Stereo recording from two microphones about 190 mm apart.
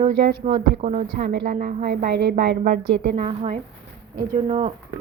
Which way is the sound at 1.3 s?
50° right (ahead or behind).